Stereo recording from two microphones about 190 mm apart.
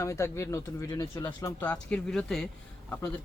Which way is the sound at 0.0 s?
15° left (ahead or behind).